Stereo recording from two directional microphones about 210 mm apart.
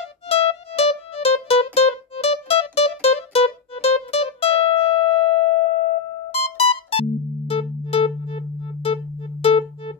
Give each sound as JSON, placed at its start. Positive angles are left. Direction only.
{"t": 0.0, "sound": "music", "side_deg": 25}